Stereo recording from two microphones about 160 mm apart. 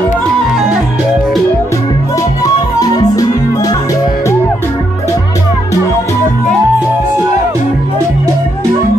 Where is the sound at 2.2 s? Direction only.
25° left (ahead or behind).